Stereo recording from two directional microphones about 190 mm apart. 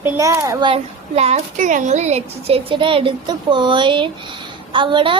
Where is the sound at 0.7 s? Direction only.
35° right (ahead or behind).